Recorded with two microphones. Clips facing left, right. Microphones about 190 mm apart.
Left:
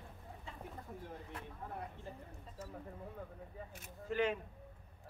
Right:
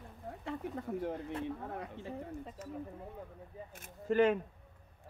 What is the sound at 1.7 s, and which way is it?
Speech, 90° right.